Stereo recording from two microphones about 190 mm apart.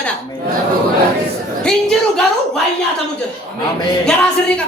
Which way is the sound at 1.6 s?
5° left (ahead or behind).